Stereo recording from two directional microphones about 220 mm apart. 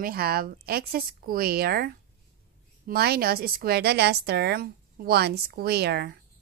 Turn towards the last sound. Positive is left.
turn(degrees=-45)  # may be behind; listen again after turning